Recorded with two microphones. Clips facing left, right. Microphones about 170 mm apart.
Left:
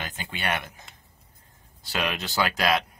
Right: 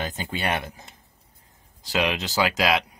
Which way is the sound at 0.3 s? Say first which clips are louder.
Right 1 dB; 30° right (ahead or behind).